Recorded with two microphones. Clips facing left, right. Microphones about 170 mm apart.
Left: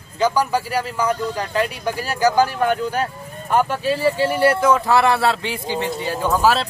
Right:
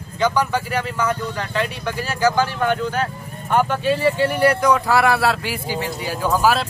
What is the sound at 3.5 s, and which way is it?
Speech, 5° left (ahead or behind).